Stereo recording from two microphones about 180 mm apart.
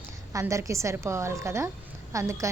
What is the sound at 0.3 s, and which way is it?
A woman's voice, 15° right (ahead or behind).